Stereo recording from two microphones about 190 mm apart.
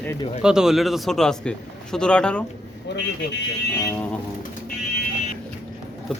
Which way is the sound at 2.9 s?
65° left (ahead or behind).